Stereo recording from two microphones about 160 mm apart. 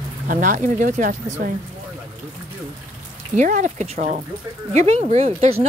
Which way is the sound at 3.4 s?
50° right (ahead or behind).